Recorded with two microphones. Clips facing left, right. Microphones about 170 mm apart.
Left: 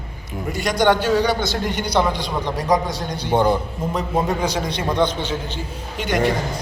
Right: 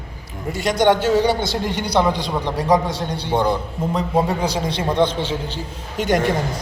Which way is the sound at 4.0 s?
30° right (ahead or behind).